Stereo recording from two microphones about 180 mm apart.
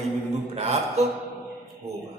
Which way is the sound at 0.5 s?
35° right (ahead or behind).